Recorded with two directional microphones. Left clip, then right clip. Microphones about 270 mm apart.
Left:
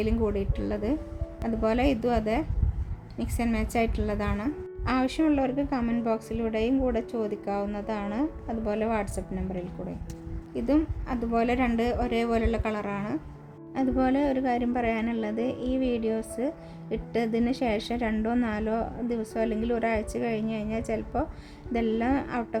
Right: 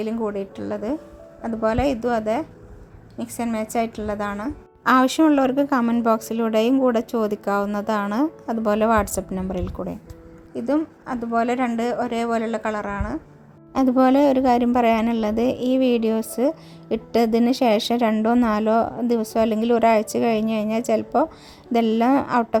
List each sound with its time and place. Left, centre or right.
0.0 s a woman's voice: centre
4.8 s a woman's voice: right
10.5 s a woman's voice: centre
13.7 s a woman's voice: right